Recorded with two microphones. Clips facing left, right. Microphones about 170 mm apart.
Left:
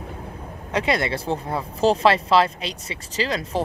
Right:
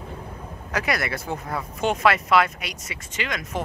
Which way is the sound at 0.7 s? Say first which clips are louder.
Left 4 dB; 25° left (ahead or behind).